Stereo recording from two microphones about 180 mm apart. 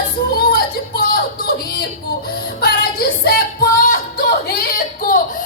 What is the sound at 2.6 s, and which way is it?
Music, 60° left (ahead or behind).